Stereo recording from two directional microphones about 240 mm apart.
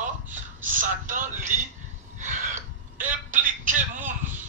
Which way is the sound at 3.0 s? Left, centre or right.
Right.